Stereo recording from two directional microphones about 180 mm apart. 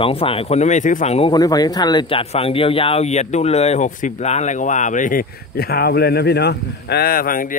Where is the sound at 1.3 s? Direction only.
20° left (ahead or behind); by 7.6 s 50° left (ahead or behind).